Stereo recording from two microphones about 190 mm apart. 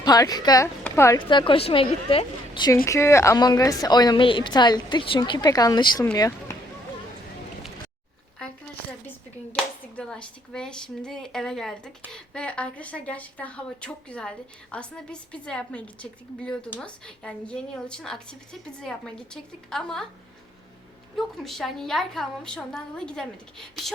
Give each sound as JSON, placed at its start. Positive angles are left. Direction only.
{"t": 0.0, "sound": "a woman's voice", "side_deg": 20}
{"t": 1.3, "sound": "a woman's voice", "side_deg": 25}
{"t": 2.8, "sound": "a woman's voice", "side_deg": 15}
{"t": 9.5, "sound": "a woman's voice", "side_deg": 5}
{"t": 21.2, "sound": "a woman's voice", "side_deg": 0}